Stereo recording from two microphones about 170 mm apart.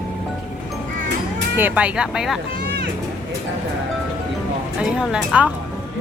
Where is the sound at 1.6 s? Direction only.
10° right (ahead or behind).